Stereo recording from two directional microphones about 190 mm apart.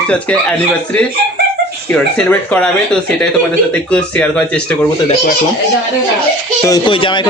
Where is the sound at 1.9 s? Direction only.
5° left (ahead or behind).